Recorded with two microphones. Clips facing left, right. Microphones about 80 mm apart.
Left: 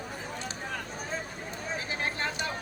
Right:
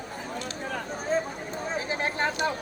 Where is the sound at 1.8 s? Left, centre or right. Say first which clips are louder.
Right 6 dB; right.